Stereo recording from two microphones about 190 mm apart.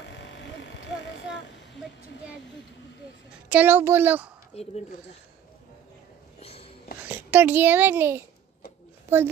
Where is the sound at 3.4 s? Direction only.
10° right (ahead or behind).